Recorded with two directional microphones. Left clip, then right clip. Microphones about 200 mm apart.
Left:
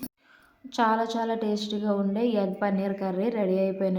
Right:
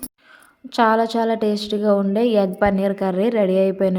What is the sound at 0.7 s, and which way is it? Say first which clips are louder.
A woman's voice: right 8 dB; 35° right (ahead or behind).